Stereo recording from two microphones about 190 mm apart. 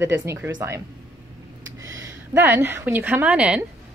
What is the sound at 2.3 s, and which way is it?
A woman's voice, 10° right (ahead or behind).